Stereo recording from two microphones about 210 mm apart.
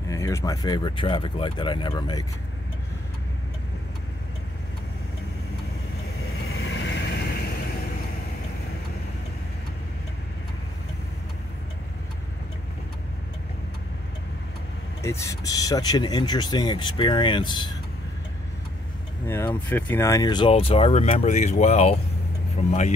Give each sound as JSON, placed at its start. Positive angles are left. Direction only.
{"t": 0.1, "sound": "speech", "side_deg": 15}
{"t": 6.5, "sound": "vehicle", "side_deg": 60}
{"t": 15.0, "sound": "speech", "side_deg": 15}
{"t": 19.2, "sound": "speech", "side_deg": 10}